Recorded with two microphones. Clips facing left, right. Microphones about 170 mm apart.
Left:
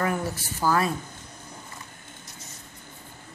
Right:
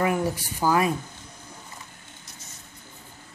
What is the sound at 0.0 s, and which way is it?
Speech, 15° right (ahead or behind).